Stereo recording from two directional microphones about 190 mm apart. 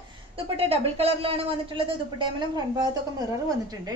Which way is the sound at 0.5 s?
30° right (ahead or behind).